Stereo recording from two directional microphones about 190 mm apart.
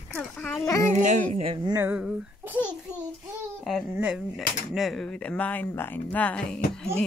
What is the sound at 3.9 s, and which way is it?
Speech, 5° right (ahead or behind).